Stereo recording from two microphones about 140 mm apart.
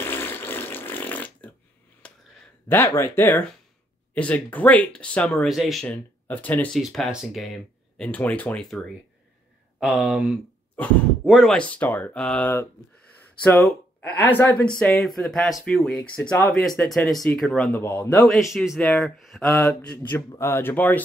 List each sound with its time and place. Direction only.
0.0 s fart: 15° left (ahead or behind)
2.0 s a sound: 5° left (ahead or behind)
2.7 s speech: 15° left (ahead or behind); by 5.9 s centre (ahead or behind)
5.9 s speech: 10° left (ahead or behind)
6.8 s speech: centre (ahead or behind)
8.0 s speech: 10° left (ahead or behind)
11.5 s speech: 10° left (ahead or behind)
14.0 s speech: 15° left (ahead or behind)
18.2 s speech: centre (ahead or behind)
19.5 s mantra: 20° left (ahead or behind)
19.8 s speech: 10° left (ahead or behind)